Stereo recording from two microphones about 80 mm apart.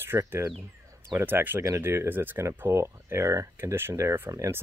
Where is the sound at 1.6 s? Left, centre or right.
Right.